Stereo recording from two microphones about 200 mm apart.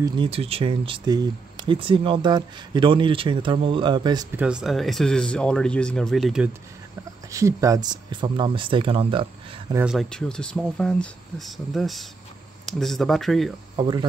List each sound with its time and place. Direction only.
0.0 s speech: 25° right (ahead or behind)
4.4 s speech: 5° right (ahead or behind)
7.2 s speech: 15° right (ahead or behind)
9.8 s speech: centre (ahead or behind)
13.7 s speech: 20° right (ahead or behind)